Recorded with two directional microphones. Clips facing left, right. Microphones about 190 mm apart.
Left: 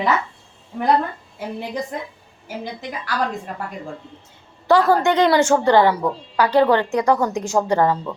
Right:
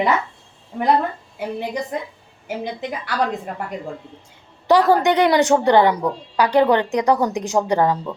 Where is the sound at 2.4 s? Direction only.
20° right (ahead or behind).